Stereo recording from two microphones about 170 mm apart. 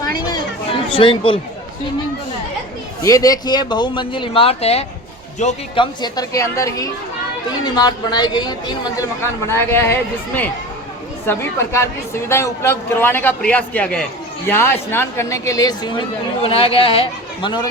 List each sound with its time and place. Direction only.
0.0 s chatter: 25° left (ahead or behind)
3.0 s a man's voice: 20° left (ahead or behind); by 5.5 s 40° left (ahead or behind)
5.7 s a man's voice: 25° left (ahead or behind)